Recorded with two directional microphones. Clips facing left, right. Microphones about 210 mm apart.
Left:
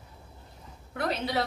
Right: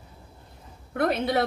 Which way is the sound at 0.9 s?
55° right (ahead or behind).